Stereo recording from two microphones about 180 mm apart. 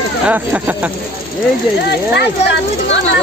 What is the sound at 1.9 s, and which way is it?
Speech, 65° left (ahead or behind).